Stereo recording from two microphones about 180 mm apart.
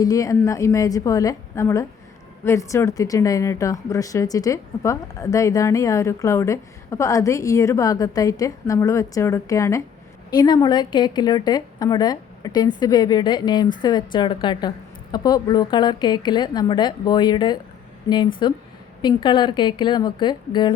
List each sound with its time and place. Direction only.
0.0 s a woman's voice: 20° left (ahead or behind)